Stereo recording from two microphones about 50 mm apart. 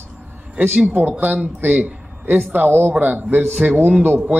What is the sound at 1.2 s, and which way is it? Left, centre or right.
Speech, right.